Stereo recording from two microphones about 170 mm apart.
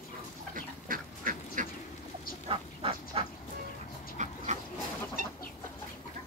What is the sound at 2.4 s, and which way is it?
Duck, 35° right (ahead or behind).